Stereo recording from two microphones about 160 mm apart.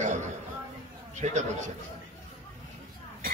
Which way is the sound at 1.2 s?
40° right (ahead or behind).